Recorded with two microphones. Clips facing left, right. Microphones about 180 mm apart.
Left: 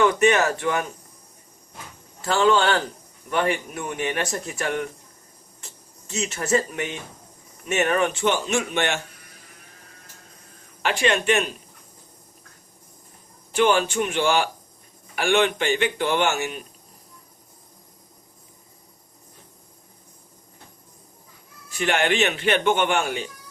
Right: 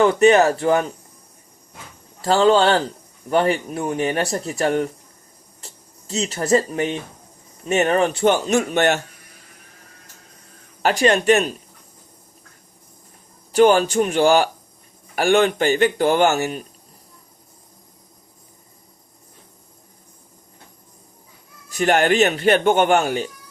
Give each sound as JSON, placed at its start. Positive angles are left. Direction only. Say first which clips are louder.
{"t": 0.0, "sound": "speech", "louder": "right 5 dB", "side_deg": -35}
{"t": 2.2, "sound": "speech", "louder": "right 4 dB", "side_deg": -35}
{"t": 10.8, "sound": "speech", "louder": "right 6 dB", "side_deg": -40}
{"t": 13.5, "sound": "speech", "louder": "right 6 dB", "side_deg": -40}
{"t": 21.7, "sound": "speech", "louder": "right 5 dB", "side_deg": -40}